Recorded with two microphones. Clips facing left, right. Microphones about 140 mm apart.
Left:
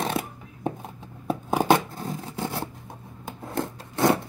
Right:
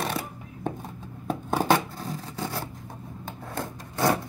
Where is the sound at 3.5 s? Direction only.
20° left (ahead or behind).